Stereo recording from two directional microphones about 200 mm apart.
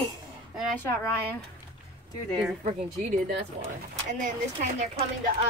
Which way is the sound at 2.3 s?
Centre (ahead or behind).